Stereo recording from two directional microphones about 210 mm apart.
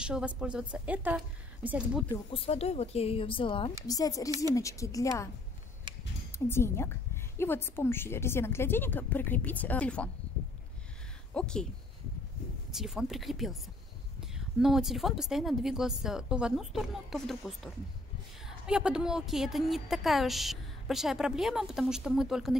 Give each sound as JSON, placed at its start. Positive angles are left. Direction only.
{"t": 0.0, "sound": "speech", "side_deg": -5}
{"t": 2.0, "sound": "a woman's voice", "side_deg": 25}
{"t": 6.3, "sound": "a woman's voice", "side_deg": 10}
{"t": 11.3, "sound": "speech", "side_deg": 5}
{"t": 12.7, "sound": "speech", "side_deg": 0}
{"t": 18.7, "sound": "speech", "side_deg": -5}